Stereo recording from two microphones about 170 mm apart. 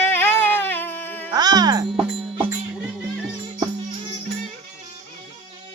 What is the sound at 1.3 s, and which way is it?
Music, 25° right (ahead or behind).